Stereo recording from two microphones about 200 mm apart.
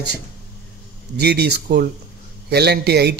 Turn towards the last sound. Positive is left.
turn(degrees=-55)  # may be behind; listen again after turning